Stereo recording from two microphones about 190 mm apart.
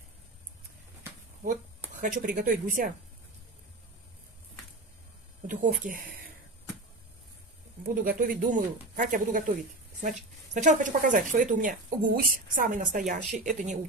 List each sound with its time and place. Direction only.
1.4 s speech: 45° right (ahead or behind)
5.5 s speech: 45° right (ahead or behind)
7.8 s speech: 50° right (ahead or behind)